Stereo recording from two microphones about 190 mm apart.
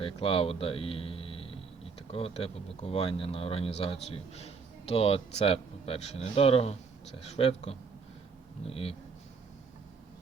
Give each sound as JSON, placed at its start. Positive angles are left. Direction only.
{"t": 0.0, "sound": "speech", "side_deg": 30}